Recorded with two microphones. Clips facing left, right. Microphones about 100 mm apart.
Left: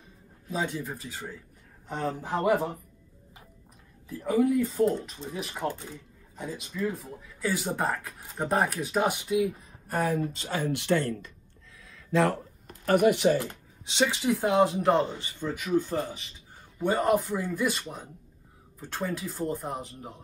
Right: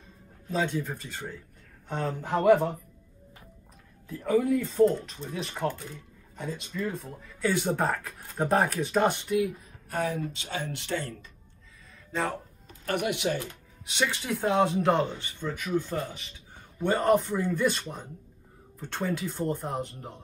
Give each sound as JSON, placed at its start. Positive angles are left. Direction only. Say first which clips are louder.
{"t": 0.5, "sound": "speech", "louder": "right 2 dB", "side_deg": 5}
{"t": 4.1, "sound": "speech", "louder": "even", "side_deg": 5}
{"t": 9.8, "sound": "speech", "louder": "left 2 dB", "side_deg": 45}
{"t": 11.9, "sound": "a sound", "louder": "left 6 dB", "side_deg": 85}
{"t": 12.8, "sound": "speech", "louder": "left 7 dB", "side_deg": 40}
{"t": 13.8, "sound": "speech", "louder": "left 4 dB", "side_deg": 20}
{"t": 16.7, "sound": "speech", "louder": "right 1 dB", "side_deg": 5}